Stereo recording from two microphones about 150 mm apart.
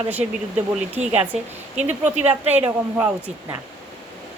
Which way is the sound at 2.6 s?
15° right (ahead or behind).